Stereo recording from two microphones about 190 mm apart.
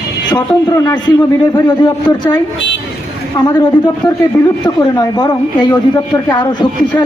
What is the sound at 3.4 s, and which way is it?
Speech, 20° left (ahead or behind).